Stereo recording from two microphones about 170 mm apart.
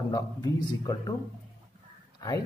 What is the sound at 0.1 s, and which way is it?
A man's voice, 25° left (ahead or behind).